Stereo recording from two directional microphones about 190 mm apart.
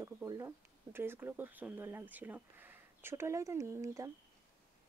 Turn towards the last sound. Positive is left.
turn(degrees=-15)  # may be behind; listen again after turning